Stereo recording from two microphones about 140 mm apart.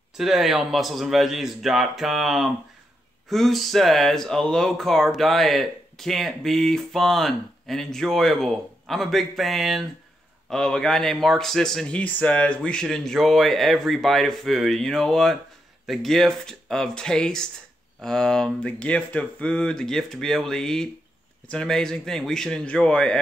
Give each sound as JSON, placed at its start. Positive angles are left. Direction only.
{"t": 0.2, "sound": "speech", "side_deg": 0}